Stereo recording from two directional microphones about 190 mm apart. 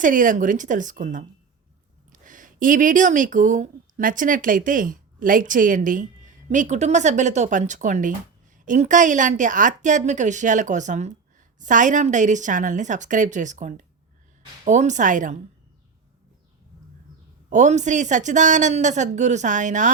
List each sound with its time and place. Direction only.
0.0 s a woman's voice: 45° right (ahead or behind)
2.2 s a woman's voice: 45° right (ahead or behind)
17.5 s a woman's voice: 40° right (ahead or behind)